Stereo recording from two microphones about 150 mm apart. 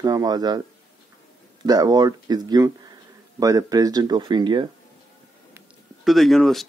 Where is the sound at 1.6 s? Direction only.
25° right (ahead or behind).